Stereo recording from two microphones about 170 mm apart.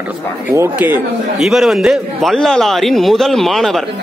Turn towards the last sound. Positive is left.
turn(degrees=0)  # may be behind; listen again after turning